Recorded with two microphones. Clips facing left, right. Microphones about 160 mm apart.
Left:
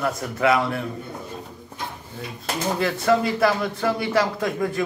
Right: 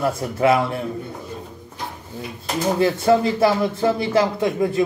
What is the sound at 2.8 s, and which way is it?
A man's voice, 30° right (ahead or behind).